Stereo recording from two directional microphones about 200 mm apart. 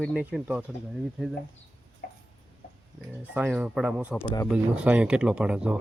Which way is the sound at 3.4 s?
5° right (ahead or behind).